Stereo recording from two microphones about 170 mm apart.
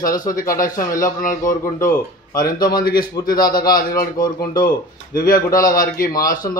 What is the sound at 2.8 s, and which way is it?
Speech, 60° left (ahead or behind).